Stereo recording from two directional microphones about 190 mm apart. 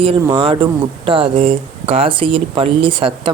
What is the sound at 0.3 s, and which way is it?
Speech, 25° right (ahead or behind).